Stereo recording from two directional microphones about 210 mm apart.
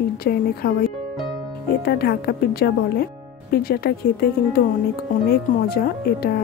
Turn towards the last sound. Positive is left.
turn(degrees=50)  # may be behind; listen again after turning